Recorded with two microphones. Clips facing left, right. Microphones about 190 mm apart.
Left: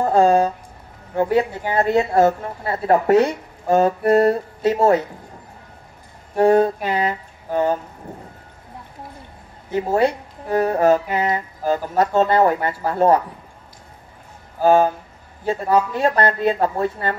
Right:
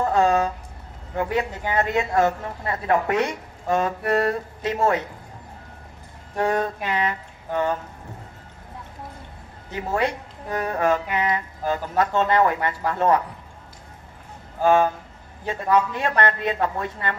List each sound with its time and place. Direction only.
0.0 s a sound: 40° left (ahead or behind)
1.1 s speech: 35° left (ahead or behind)
6.3 s speech: 30° left (ahead or behind)
9.8 s speech: 35° left (ahead or behind)
14.6 s speech: 35° left (ahead or behind)